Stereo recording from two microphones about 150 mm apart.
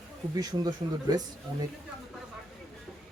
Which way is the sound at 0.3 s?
25° right (ahead or behind).